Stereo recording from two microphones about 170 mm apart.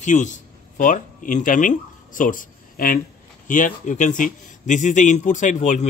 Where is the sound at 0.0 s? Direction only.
45° left (ahead or behind).